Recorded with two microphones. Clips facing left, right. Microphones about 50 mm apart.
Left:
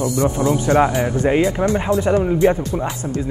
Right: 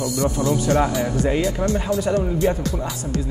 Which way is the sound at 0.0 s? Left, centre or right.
Left.